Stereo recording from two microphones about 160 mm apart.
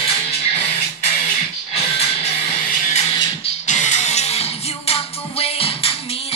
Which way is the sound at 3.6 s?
45° left (ahead or behind).